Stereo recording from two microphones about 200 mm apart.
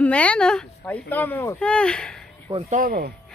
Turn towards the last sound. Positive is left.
turn(degrees=-45)  # may be behind; listen again after turning